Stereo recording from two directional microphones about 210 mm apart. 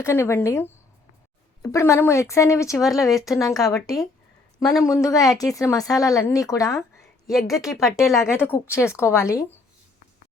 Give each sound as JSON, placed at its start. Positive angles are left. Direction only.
{"t": 0.0, "sound": "speech", "side_deg": 10}
{"t": 3.3, "sound": "speech", "side_deg": 0}
{"t": 4.8, "sound": "speech", "side_deg": 15}
{"t": 7.3, "sound": "a woman's voice", "side_deg": 0}
{"t": 8.3, "sound": "speech", "side_deg": 10}